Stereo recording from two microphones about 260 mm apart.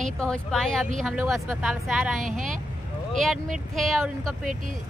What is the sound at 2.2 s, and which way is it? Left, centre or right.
Speech, right.